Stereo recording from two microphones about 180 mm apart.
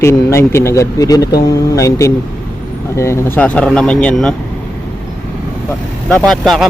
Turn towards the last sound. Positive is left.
turn(degrees=0)  # may be behind; listen again after turning